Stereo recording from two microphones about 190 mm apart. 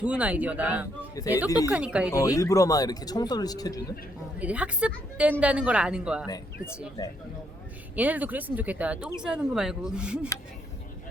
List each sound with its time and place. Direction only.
0.0 s speech: 5° right (ahead or behind)
1.5 s speech: 15° left (ahead or behind)
1.7 s speech: 5° right (ahead or behind)
2.1 s speech: 15° left (ahead or behind)
4.4 s speech: 5° right (ahead or behind)
6.2 s speech: 20° left (ahead or behind)
7.9 s speech: 10° right (ahead or behind)